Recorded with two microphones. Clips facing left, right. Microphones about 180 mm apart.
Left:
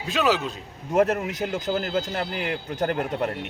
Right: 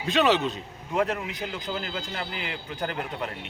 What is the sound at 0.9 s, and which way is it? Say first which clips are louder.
Speech: left 6 dB; 45° left (ahead or behind).